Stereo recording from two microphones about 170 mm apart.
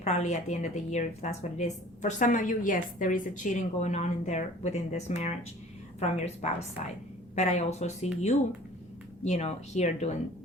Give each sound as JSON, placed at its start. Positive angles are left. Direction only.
{"t": 0.0, "sound": "a woman's voice", "side_deg": 40}